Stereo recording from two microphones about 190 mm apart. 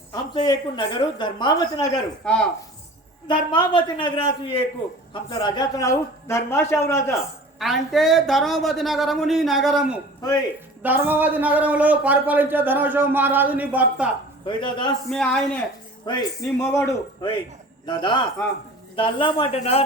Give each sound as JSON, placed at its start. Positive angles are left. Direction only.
{"t": 0.1, "sound": "a woman's voice", "side_deg": 20}
{"t": 2.2, "sound": "speech", "side_deg": 5}
{"t": 3.5, "sound": "a woman's voice", "side_deg": 25}
{"t": 7.6, "sound": "a man's voice", "side_deg": 0}
{"t": 14.4, "sound": "a woman's voice", "side_deg": 25}
{"t": 15.1, "sound": "speech", "side_deg": 5}
{"t": 16.0, "sound": "a man's voice", "side_deg": 20}